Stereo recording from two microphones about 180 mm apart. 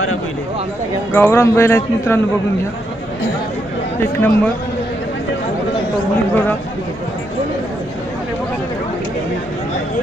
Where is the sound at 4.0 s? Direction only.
10° left (ahead or behind).